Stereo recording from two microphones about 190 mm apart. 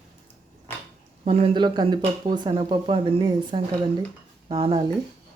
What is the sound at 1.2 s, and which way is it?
Speech, 30° right (ahead or behind).